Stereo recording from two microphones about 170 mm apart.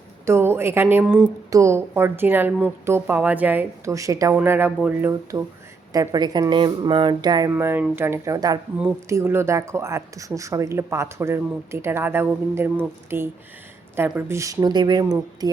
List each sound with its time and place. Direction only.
0.3 s speech: 15° right (ahead or behind)
7.5 s speech: 10° right (ahead or behind)